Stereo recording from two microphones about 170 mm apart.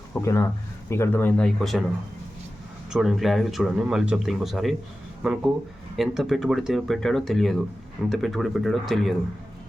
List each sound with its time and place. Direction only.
0.1 s speech: 15° left (ahead or behind)
2.9 s speech: centre (ahead or behind)